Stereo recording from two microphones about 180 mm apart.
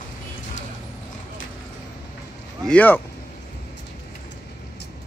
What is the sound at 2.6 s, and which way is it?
Speech, 10° left (ahead or behind).